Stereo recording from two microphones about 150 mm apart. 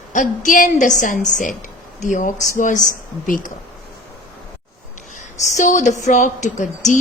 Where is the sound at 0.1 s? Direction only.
60° left (ahead or behind).